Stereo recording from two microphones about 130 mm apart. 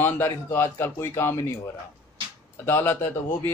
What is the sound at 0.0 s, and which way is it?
A man's voice, 15° left (ahead or behind).